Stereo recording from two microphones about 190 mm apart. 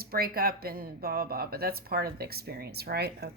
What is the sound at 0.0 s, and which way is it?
Speech, 55° right (ahead or behind).